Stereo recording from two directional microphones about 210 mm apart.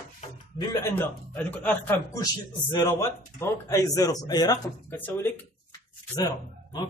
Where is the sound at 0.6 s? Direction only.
15° left (ahead or behind).